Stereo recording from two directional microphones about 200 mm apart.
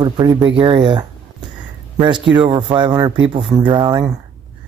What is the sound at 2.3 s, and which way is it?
Speech, 25° right (ahead or behind).